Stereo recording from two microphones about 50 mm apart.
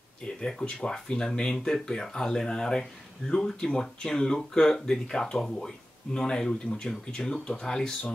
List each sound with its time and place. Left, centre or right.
0.2 s speech: centre